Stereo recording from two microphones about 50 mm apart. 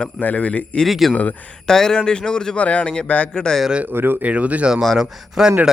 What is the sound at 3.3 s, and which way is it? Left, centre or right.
Speech, centre.